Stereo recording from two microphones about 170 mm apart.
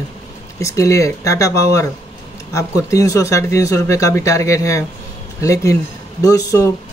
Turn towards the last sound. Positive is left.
turn(degrees=20)  # may be behind; listen again after turning